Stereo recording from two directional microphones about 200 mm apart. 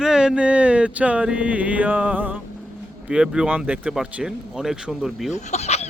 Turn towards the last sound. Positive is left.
turn(degrees=35)  # may be behind; listen again after turning